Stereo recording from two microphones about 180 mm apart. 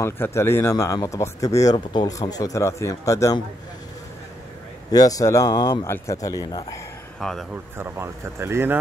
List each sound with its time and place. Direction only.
0.0 s speech: 15° left (ahead or behind)
4.9 s a man's voice: 20° left (ahead or behind)
7.2 s speech: 5° left (ahead or behind)
7.7 s speech: 15° right (ahead or behind)